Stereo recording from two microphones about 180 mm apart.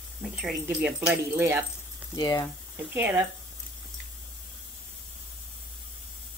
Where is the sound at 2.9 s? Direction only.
10° right (ahead or behind).